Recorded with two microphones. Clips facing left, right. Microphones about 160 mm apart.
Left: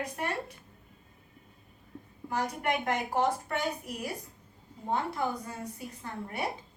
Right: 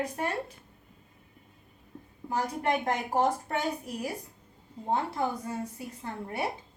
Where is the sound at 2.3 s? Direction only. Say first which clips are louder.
Right 2 dB; 30° right (ahead or behind).